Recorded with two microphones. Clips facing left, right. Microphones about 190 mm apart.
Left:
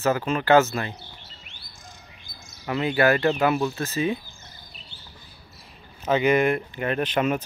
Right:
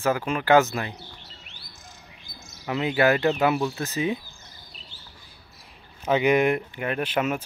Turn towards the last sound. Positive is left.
turn(degrees=-5)  # may be behind; listen again after turning